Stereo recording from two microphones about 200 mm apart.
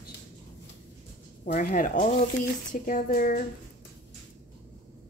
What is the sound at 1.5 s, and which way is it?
Speech, 45° left (ahead or behind).